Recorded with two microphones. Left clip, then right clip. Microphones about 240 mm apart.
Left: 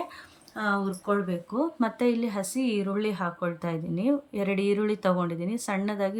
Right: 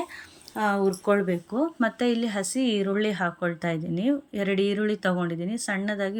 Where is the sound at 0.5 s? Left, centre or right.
Centre.